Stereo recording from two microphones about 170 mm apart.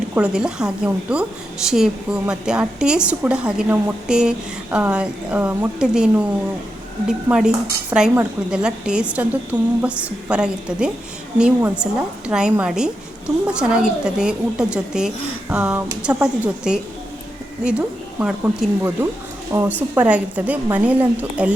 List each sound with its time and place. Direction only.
0.1 s a woman's voice: 5° right (ahead or behind)
20.0 s a woman's voice: 10° right (ahead or behind)